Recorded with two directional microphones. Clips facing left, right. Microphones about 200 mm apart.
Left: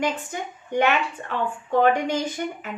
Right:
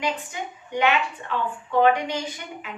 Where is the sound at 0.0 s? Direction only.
50° left (ahead or behind).